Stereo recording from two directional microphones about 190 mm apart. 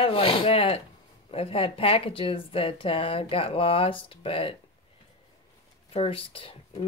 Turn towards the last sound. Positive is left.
turn(degrees=30)  # may be behind; listen again after turning